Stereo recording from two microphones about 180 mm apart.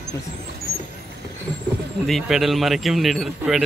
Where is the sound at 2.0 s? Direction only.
Centre (ahead or behind).